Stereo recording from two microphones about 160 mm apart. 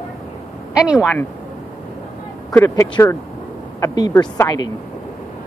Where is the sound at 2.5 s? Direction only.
20° left (ahead or behind).